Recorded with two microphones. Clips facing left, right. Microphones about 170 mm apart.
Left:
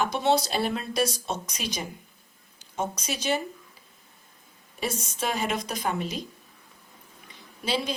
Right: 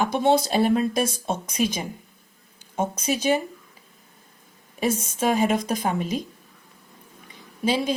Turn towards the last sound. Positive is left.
turn(degrees=-50)  # may be behind; listen again after turning